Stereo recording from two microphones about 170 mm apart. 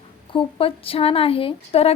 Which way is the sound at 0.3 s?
35° left (ahead or behind).